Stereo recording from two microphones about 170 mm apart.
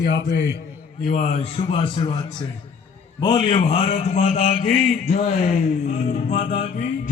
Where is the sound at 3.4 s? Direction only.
35° left (ahead or behind).